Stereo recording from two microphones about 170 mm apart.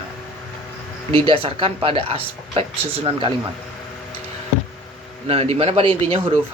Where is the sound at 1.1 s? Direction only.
30° right (ahead or behind).